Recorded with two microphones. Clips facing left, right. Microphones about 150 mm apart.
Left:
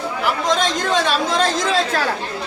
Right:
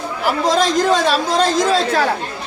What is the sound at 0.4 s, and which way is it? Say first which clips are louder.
Speech: right 7 dB; 35° right (ahead or behind).